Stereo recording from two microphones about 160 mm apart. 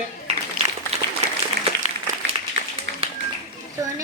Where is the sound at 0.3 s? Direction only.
45° right (ahead or behind).